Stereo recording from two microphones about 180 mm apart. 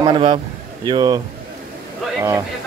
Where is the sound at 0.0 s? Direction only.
25° right (ahead or behind).